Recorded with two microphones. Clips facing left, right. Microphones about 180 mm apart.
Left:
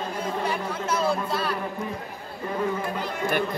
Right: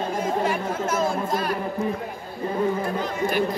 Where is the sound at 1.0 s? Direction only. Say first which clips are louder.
Right 1 dB; 45° right (ahead or behind).